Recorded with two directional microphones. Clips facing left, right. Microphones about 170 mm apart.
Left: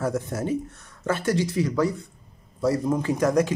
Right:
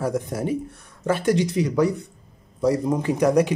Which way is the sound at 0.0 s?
15° right (ahead or behind).